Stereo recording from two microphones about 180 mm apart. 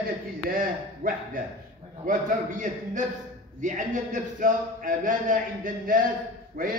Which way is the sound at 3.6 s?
45° right (ahead or behind).